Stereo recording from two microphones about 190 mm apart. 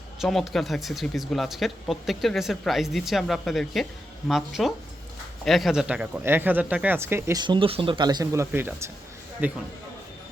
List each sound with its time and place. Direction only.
0.2 s speech: centre (ahead or behind)
7.4 s speech: 25° right (ahead or behind); by 9.6 s 10° right (ahead or behind)